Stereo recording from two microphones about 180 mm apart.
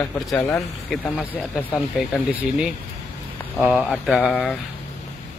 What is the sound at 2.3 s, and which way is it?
Speech, centre (ahead or behind).